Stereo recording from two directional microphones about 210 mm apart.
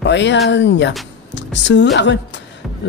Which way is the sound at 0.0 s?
55° left (ahead or behind).